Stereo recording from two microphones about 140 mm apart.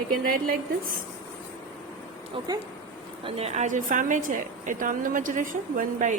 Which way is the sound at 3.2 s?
45° right (ahead or behind).